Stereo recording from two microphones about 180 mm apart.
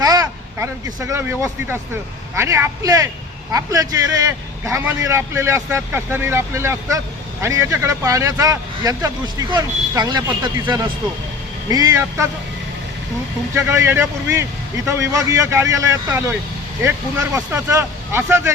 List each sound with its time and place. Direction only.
0.0 s speech: 20° right (ahead or behind)
13.5 s speech: 15° right (ahead or behind)
17.3 s speech: 15° right (ahead or behind)